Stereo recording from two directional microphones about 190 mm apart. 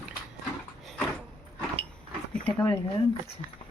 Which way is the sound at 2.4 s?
15° left (ahead or behind).